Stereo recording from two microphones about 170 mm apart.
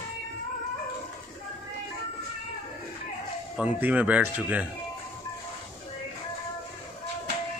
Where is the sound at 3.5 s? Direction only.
10° right (ahead or behind).